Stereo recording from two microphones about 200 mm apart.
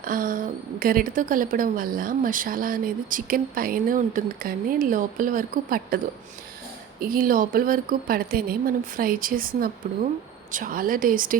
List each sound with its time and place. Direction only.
0.0 s a woman's voice: 45° right (ahead or behind)
7.0 s a woman's voice: 45° right (ahead or behind)